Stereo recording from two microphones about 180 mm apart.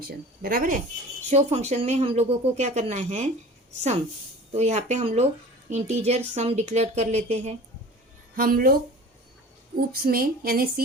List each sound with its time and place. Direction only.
0.4 s speech: 50° right (ahead or behind)
1.3 s a woman's voice: 35° right (ahead or behind)
8.4 s speech: 55° right (ahead or behind)
9.9 s speech: 55° right (ahead or behind)